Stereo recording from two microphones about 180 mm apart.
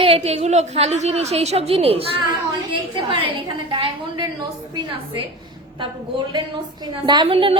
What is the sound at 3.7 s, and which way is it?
A woman's voice, 30° right (ahead or behind).